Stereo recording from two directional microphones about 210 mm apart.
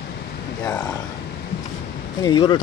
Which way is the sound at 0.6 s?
15° left (ahead or behind).